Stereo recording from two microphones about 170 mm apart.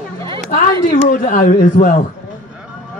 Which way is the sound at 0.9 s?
50° left (ahead or behind).